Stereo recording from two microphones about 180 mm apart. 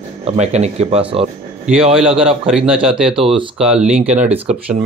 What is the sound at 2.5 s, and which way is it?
Speech, 5° right (ahead or behind).